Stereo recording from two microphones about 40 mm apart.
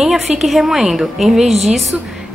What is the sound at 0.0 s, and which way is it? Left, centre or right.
A woman's voice, centre.